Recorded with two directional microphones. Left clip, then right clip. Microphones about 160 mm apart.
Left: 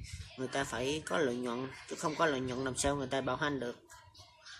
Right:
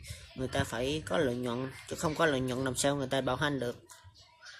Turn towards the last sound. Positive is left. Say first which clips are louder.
# right 3 dB
turn(degrees=-25)  # may be behind; listen again after turning